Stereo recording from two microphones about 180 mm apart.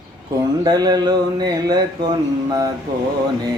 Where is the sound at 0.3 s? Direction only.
20° right (ahead or behind).